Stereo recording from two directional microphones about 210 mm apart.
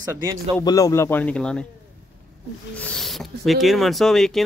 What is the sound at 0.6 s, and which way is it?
Speech, 15° left (ahead or behind).